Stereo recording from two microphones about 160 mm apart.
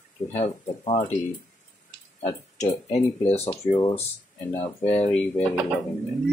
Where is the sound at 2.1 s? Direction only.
50° left (ahead or behind).